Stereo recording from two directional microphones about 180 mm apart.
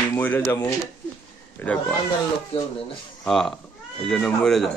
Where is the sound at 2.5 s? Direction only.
35° left (ahead or behind).